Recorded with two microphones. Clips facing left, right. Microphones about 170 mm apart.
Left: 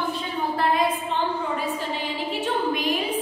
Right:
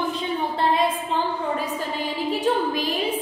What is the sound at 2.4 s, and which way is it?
Speech, 35° right (ahead or behind).